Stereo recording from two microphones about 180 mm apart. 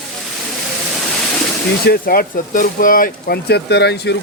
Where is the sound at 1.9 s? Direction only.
55° left (ahead or behind).